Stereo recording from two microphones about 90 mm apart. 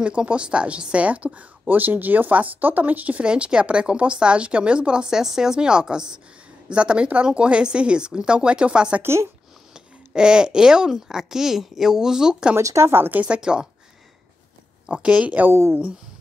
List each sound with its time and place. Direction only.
0.0 s speech: 10° right (ahead or behind)
9.0 s a woman's voice: 30° right (ahead or behind)
9.8 s speech: 10° right (ahead or behind)
12.5 s a woman's voice: 30° right (ahead or behind); by 13.7 s 10° right (ahead or behind)
14.9 s speech: 10° right (ahead or behind)
15.5 s a woman's voice: 30° right (ahead or behind)